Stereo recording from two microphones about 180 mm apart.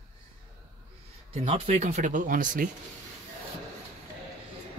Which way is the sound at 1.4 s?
40° right (ahead or behind).